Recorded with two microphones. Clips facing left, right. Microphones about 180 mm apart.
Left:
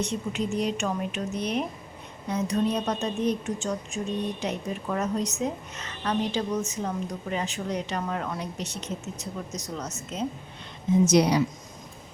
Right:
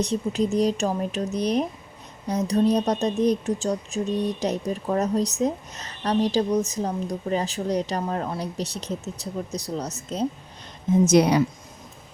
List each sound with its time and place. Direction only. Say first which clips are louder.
0.0 s speech: right 5 dB; 35° right (ahead or behind)
11.0 s a woman's voice: right 3 dB; 55° right (ahead or behind)